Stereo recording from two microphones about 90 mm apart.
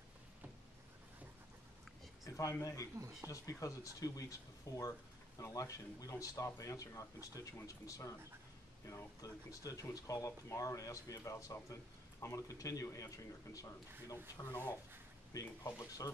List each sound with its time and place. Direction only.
2.2 s a sound: 40° left (ahead or behind)
2.6 s speech: 35° left (ahead or behind)
3.0 s speech: 40° right (ahead or behind)
3.3 s speech: 40° left (ahead or behind)
14.4 s speech: 50° left (ahead or behind)